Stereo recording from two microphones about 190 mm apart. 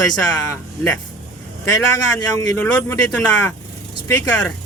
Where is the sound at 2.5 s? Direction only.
15° left (ahead or behind).